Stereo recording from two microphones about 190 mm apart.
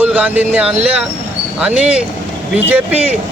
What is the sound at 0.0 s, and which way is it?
Speech, 10° right (ahead or behind).